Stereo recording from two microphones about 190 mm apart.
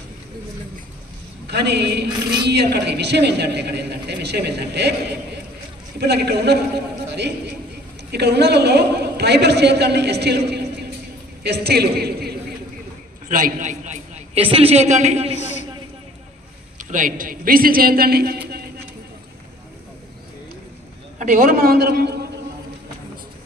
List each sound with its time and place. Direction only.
1.5 s a man's voice: 60° right (ahead or behind)
13.3 s a man's voice: 45° right (ahead or behind)
15.3 s a sound: 35° left (ahead or behind)
16.7 s a man's voice: 45° right (ahead or behind)
21.2 s a man's voice: 45° right (ahead or behind)